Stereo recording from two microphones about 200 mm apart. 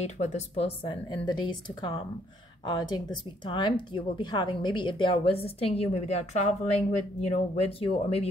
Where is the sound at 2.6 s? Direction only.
20° left (ahead or behind).